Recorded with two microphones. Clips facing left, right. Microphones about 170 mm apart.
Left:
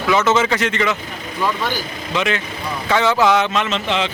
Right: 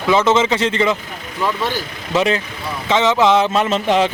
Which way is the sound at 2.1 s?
35° right (ahead or behind).